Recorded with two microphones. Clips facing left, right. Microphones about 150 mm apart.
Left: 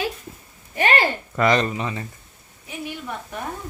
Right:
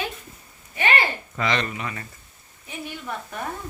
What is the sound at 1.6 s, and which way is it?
Speech, 30° left (ahead or behind).